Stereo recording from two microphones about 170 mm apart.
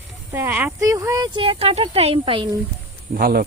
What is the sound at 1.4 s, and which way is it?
Speech, 35° right (ahead or behind).